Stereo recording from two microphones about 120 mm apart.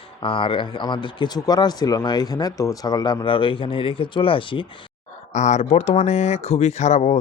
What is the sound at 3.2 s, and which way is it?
Speech, 45° left (ahead or behind).